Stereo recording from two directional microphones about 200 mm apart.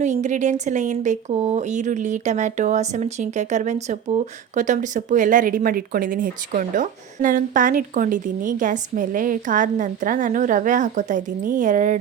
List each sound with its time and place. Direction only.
0.0 s speech: 35° right (ahead or behind)